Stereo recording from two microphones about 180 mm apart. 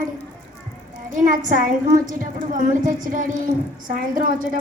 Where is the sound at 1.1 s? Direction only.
50° right (ahead or behind).